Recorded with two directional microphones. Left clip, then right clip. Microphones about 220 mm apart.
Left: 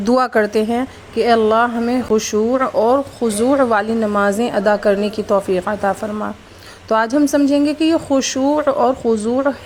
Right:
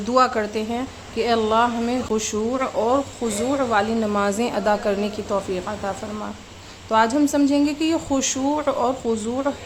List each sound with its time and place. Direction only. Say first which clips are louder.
0.0 s a woman's voice: left 4 dB; 30° left (ahead or behind)